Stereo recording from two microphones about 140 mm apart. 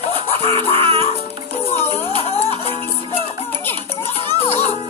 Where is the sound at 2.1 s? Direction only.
45° left (ahead or behind).